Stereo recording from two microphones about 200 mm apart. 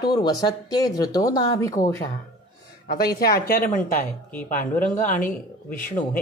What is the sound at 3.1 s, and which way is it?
A woman's voice, 50° left (ahead or behind).